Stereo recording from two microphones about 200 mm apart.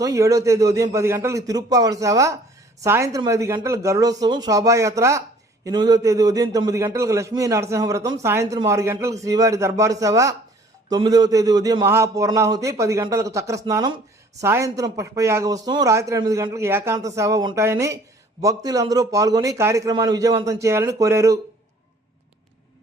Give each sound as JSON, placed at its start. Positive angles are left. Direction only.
{"t": 0.0, "sound": "a man's voice", "side_deg": -15}